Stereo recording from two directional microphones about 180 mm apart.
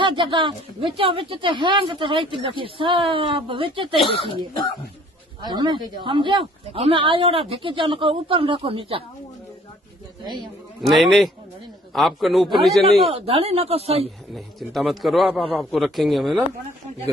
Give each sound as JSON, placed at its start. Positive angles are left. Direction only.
{"t": 0.0, "sound": "speech", "side_deg": -25}
{"t": 4.0, "sound": "speech", "side_deg": 30}
{"t": 5.4, "sound": "speech", "side_deg": -25}
{"t": 10.8, "sound": "a man's voice", "side_deg": 0}
{"t": 13.0, "sound": "speech", "side_deg": -35}
{"t": 14.3, "sound": "a man's voice", "side_deg": 0}